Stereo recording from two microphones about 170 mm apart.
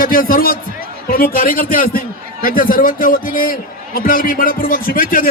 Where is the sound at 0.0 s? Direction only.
55° left (ahead or behind).